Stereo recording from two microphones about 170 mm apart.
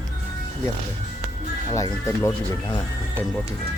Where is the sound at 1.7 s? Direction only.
20° left (ahead or behind).